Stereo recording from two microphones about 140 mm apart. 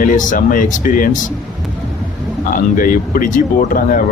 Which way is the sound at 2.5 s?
80° left.